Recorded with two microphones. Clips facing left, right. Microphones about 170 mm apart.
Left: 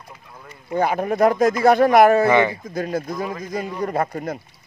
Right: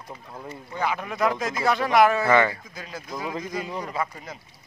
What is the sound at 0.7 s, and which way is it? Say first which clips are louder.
Speech: left 8 dB; 45° left (ahead or behind).